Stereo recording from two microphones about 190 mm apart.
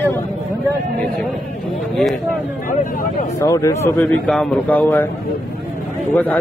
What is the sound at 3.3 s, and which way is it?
Speech, 15° left (ahead or behind).